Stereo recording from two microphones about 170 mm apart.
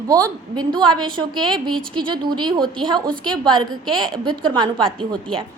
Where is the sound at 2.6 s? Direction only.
5° left (ahead or behind).